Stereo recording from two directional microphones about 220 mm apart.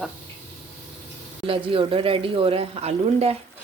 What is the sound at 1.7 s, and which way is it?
Speech, 25° right (ahead or behind).